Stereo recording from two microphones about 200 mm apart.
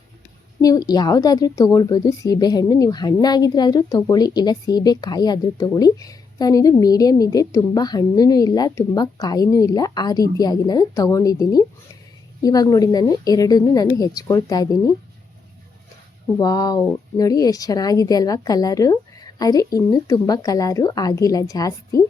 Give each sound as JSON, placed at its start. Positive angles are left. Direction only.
{"t": 0.6, "sound": "speech", "side_deg": 20}
{"t": 16.4, "sound": "speech", "side_deg": 20}